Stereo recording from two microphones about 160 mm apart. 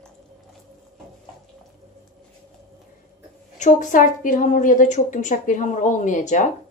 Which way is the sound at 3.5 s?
50° left (ahead or behind).